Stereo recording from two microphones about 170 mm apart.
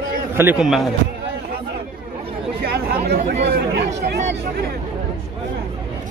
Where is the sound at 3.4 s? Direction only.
85° right.